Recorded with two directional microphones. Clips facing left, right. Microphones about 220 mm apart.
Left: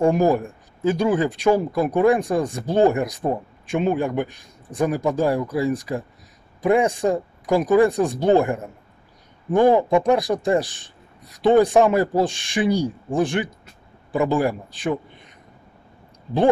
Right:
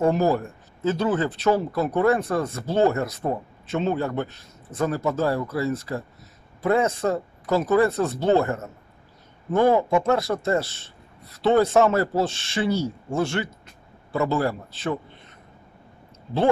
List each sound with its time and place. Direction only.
0.0 s speech: 15° left (ahead or behind)